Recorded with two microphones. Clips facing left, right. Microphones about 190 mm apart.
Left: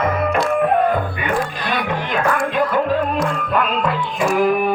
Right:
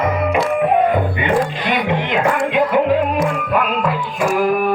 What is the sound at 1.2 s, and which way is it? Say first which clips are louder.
Music: right 4 dB; 20° right (ahead or behind).